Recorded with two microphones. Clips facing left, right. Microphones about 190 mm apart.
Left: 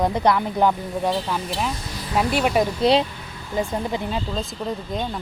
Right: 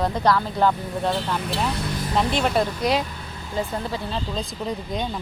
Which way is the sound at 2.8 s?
25° left (ahead or behind).